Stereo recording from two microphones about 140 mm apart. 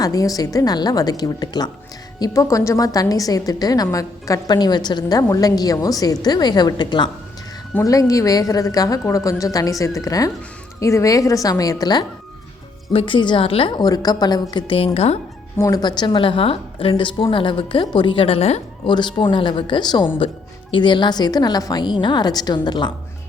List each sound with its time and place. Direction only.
0.0 s a woman's voice: 25° left (ahead or behind)
12.9 s a woman's voice: 40° left (ahead or behind)
15.5 s a woman's voice: 25° left (ahead or behind); by 18.6 s 50° left (ahead or behind)
18.9 s a woman's voice: 35° left (ahead or behind)